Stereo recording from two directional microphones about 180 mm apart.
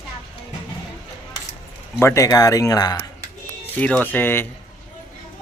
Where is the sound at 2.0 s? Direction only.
15° left (ahead or behind).